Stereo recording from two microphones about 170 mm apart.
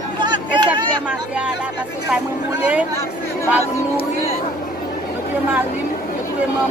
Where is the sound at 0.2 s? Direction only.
25° right (ahead or behind).